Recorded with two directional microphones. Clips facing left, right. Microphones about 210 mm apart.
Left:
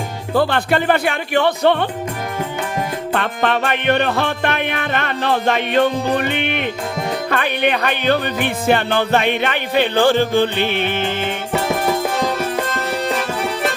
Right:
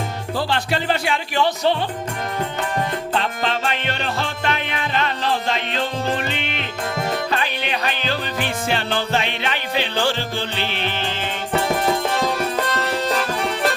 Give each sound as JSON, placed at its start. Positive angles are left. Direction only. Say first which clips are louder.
{"t": 0.3, "sound": "music", "louder": "left 7 dB", "side_deg": 55}
{"t": 3.1, "sound": "music", "louder": "left 4 dB", "side_deg": 60}
{"t": 12.9, "sound": "music", "louder": "left 1 dB", "side_deg": 5}